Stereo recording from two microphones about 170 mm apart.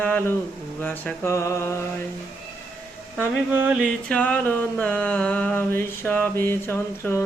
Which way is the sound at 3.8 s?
5° left (ahead or behind).